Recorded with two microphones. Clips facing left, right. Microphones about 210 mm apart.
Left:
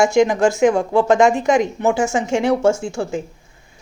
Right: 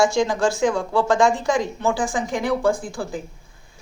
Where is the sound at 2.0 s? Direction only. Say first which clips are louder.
Left 5 dB; 75° left (ahead or behind).